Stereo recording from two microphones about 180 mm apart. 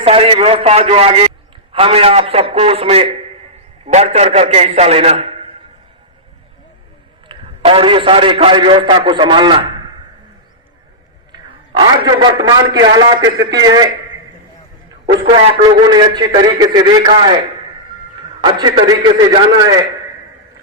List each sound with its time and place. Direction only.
0.0 s a man's voice: 30° right (ahead or behind)
7.3 s a man's voice: 30° right (ahead or behind)
11.3 s a man's voice: 25° right (ahead or behind)
15.3 s a man's voice: 25° right (ahead or behind)
18.4 s a man's voice: 25° right (ahead or behind)